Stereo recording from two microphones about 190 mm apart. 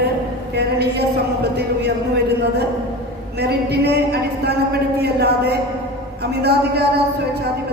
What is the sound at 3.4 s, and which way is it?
Speech, 60° right (ahead or behind).